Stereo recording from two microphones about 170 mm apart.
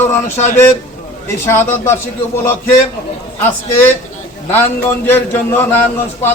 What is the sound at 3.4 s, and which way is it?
Speech, 15° left (ahead or behind).